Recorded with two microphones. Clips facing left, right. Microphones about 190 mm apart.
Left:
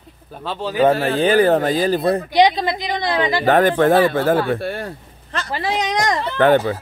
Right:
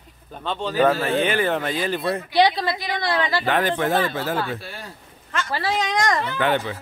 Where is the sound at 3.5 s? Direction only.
50° left (ahead or behind).